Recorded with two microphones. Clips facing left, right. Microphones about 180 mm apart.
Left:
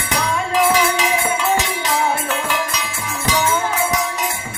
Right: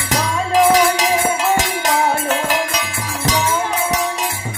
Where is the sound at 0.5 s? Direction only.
40° right (ahead or behind).